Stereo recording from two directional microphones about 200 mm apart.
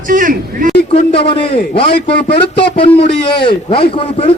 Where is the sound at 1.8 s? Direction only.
25° left (ahead or behind).